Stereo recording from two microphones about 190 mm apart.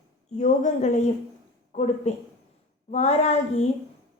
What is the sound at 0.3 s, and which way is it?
A woman's voice, 40° left (ahead or behind).